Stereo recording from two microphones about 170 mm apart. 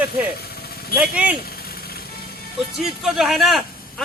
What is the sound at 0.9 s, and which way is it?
Speech, 10° right (ahead or behind).